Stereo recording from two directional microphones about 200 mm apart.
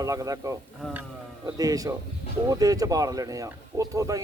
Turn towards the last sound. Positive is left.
turn(degrees=-15)  # may be behind; listen again after turning